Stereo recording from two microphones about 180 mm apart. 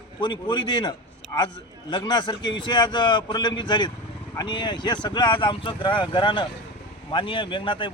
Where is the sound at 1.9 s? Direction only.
25° left (ahead or behind).